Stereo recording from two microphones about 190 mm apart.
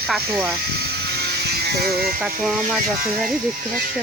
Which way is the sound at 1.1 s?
55° right (ahead or behind).